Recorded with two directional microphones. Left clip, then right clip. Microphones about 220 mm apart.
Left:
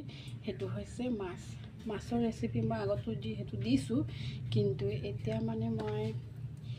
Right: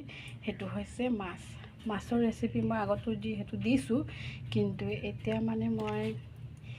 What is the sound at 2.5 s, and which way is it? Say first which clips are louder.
A woman's voice: right 3 dB; 10° right (ahead or behind).